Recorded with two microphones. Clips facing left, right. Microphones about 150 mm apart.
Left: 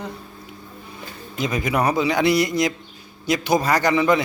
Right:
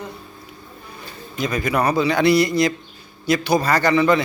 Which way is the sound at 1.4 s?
20° left (ahead or behind).